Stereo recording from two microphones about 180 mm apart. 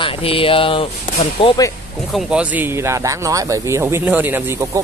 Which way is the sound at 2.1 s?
5° right (ahead or behind).